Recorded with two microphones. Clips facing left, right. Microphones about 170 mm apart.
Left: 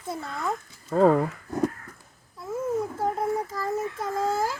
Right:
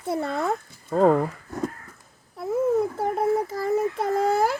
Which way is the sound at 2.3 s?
65° right (ahead or behind).